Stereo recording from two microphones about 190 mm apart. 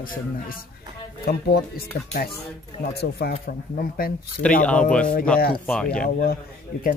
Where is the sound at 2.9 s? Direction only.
55° left (ahead or behind).